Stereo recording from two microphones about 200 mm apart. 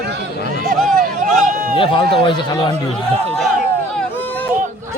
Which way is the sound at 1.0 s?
40° right (ahead or behind).